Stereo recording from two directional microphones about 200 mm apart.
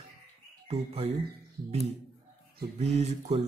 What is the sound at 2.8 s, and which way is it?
Speech, 35° right (ahead or behind).